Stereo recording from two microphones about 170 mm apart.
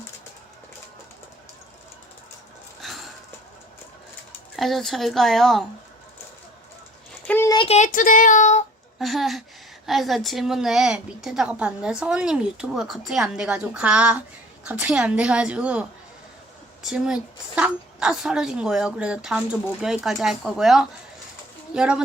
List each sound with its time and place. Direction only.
2.8 s wheeze: centre (ahead or behind)
4.5 s a woman's voice: centre (ahead or behind)
7.3 s a sound: 10° left (ahead or behind)
7.5 s a sound: 30° left (ahead or behind)
7.8 s child singing: 50° left (ahead or behind)
9.0 s a woman's voice: centre (ahead or behind)
16.8 s a woman's voice: 5° right (ahead or behind)